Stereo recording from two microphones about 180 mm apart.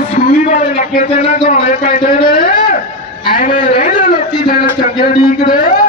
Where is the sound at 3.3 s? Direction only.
55° left (ahead or behind).